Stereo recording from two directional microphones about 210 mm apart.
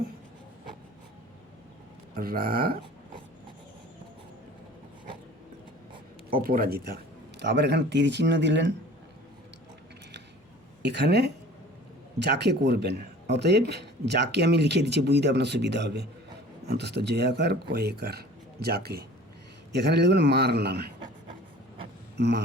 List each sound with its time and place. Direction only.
2.1 s speech: 45° right (ahead or behind)
6.3 s speech: 45° right (ahead or behind)
10.8 s speech: 55° right (ahead or behind)